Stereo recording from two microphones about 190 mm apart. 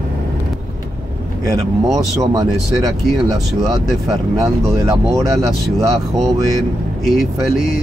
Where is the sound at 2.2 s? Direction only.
20° right (ahead or behind).